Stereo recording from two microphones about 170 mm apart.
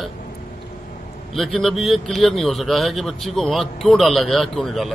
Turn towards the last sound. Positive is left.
turn(degrees=0)  # may be behind; listen again after turning